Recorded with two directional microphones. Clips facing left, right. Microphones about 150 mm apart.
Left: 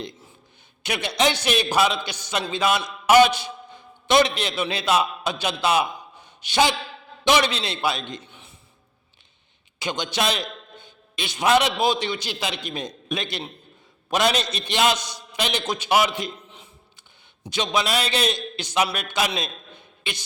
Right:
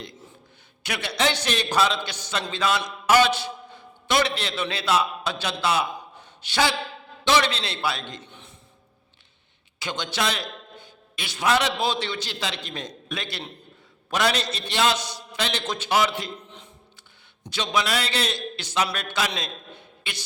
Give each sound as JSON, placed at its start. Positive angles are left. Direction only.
{"t": 0.8, "sound": "a man's voice", "side_deg": 20}
{"t": 8.3, "sound": "a sound", "side_deg": 5}
{"t": 9.7, "sound": "a man's voice", "side_deg": 15}
{"t": 17.4, "sound": "a man's voice", "side_deg": 15}